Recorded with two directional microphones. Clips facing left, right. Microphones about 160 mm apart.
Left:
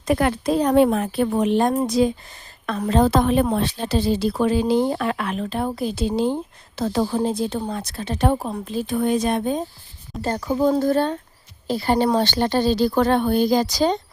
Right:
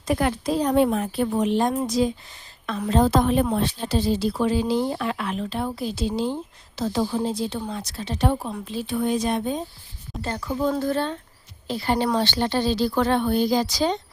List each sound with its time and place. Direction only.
0.0 s speech: 65° left (ahead or behind); by 9.6 s 50° left (ahead or behind)
10.2 s speech: 40° left (ahead or behind)